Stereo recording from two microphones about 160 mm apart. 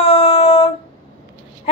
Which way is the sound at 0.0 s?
35° left (ahead or behind).